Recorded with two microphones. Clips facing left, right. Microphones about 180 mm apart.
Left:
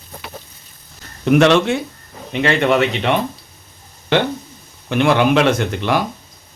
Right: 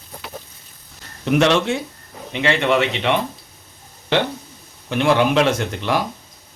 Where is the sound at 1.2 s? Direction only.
60° left (ahead or behind).